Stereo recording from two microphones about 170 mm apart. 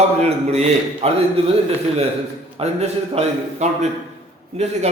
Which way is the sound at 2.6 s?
40° right (ahead or behind).